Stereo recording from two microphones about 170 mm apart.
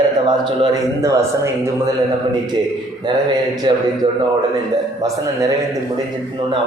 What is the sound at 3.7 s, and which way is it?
Speech, 25° right (ahead or behind).